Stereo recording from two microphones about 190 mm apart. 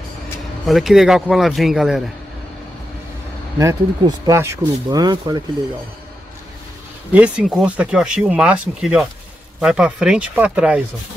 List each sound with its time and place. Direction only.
0.7 s speech: centre (ahead or behind)
3.5 s speech: 15° right (ahead or behind)
7.1 s speech: 5° right (ahead or behind)